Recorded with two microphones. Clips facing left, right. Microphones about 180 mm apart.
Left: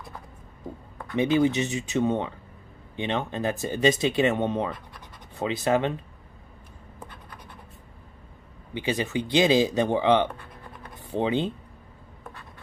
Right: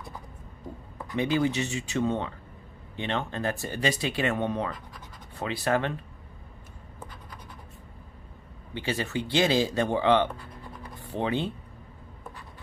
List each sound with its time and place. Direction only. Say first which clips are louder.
1.1 s speech: left 4 dB; 20° left (ahead or behind)
8.7 s speech: left 3 dB; 15° left (ahead or behind)